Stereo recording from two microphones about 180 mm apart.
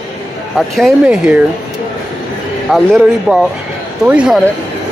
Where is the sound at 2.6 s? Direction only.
Centre (ahead or behind).